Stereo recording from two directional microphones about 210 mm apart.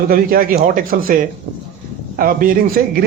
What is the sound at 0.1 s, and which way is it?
Speech, 45° right (ahead or behind).